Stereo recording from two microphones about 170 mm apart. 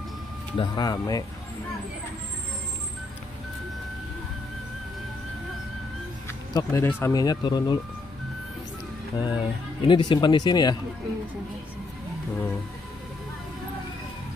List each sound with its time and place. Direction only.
0.6 s speech: 25° left (ahead or behind)
6.2 s speech: 15° left (ahead or behind)
9.1 s speech: 25° left (ahead or behind)